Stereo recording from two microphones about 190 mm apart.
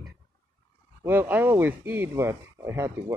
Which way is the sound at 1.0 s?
10° right (ahead or behind).